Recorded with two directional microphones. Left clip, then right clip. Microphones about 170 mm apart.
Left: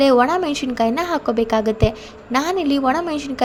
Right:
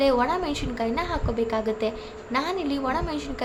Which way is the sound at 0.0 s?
40° left (ahead or behind).